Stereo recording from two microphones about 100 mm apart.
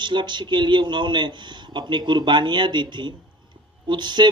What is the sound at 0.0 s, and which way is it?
A woman's voice, 50° right (ahead or behind).